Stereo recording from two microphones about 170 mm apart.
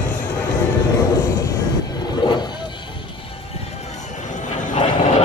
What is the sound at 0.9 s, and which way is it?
Vehicle, 20° left (ahead or behind).